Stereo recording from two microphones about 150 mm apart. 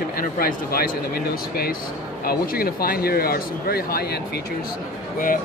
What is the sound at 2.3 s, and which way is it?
Speech, 85° left.